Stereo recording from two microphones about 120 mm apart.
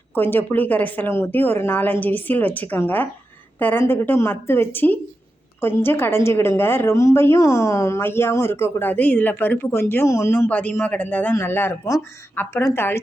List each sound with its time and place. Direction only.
0.1 s a woman's voice: 15° left (ahead or behind)